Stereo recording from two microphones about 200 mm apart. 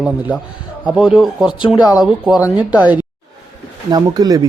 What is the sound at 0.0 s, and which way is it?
A man's voice, 5° right (ahead or behind).